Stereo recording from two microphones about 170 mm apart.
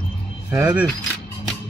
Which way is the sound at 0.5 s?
5° right (ahead or behind).